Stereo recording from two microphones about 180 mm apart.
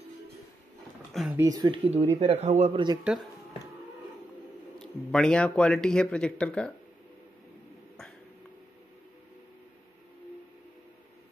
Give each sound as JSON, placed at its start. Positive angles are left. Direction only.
{"t": 1.1, "sound": "speech", "side_deg": 0}
{"t": 1.4, "sound": "speech", "side_deg": -20}
{"t": 3.0, "sound": "speech", "side_deg": -5}
{"t": 4.7, "sound": "speech", "side_deg": 0}